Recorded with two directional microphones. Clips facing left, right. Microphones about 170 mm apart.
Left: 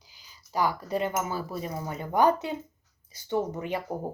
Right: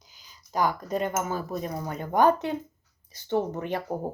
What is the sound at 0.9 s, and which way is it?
Speech, 45° right (ahead or behind).